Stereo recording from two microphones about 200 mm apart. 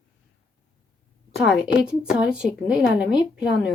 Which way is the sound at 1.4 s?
55° left (ahead or behind).